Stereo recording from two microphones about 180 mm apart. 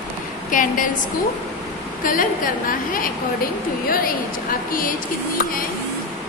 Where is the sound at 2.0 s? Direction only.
50° left (ahead or behind).